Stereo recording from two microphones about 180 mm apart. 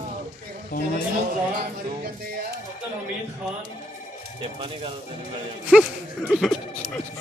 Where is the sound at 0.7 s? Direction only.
50° left (ahead or behind).